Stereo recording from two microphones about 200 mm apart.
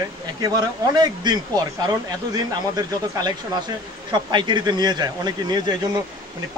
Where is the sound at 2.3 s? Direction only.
20° right (ahead or behind).